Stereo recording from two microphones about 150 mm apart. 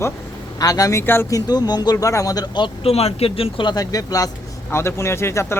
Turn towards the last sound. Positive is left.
turn(degrees=15)  # may be behind; listen again after turning